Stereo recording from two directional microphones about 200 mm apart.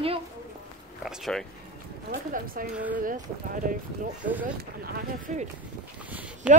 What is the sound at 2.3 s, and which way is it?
A woman's voice, 45° right (ahead or behind).